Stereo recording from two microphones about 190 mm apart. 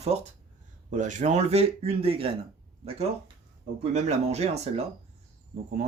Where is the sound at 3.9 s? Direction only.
35° right (ahead or behind).